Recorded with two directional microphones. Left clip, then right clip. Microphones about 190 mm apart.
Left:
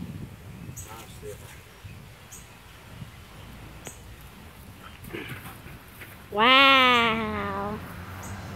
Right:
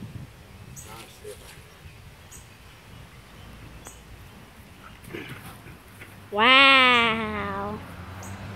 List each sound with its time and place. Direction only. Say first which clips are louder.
5.1 s pig: left 1 dB; centre (ahead or behind)
6.3 s speech: right 1 dB; centre (ahead or behind)